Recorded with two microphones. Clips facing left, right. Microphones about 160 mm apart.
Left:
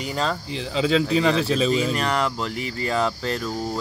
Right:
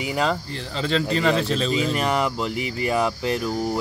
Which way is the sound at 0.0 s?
15° right (ahead or behind).